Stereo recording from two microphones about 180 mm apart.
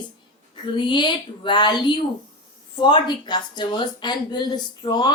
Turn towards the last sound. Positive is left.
turn(degrees=25)  # may be behind; listen again after turning